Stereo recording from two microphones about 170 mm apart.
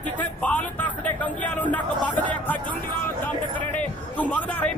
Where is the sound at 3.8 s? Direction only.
10° left (ahead or behind).